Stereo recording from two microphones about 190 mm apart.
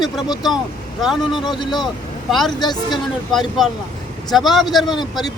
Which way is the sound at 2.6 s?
20° left (ahead or behind).